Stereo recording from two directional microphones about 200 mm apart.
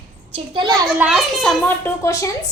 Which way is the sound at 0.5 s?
20° right (ahead or behind).